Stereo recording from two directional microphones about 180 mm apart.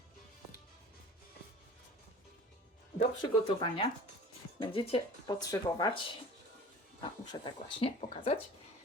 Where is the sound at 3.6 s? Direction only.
25° left (ahead or behind).